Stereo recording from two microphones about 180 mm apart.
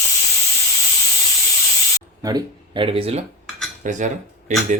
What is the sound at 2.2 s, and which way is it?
Speech, 20° right (ahead or behind).